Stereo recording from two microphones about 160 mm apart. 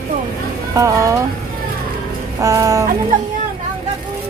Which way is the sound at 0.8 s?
20° right (ahead or behind).